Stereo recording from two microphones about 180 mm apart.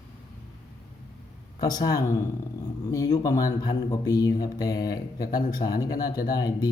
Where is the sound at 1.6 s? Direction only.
20° left (ahead or behind).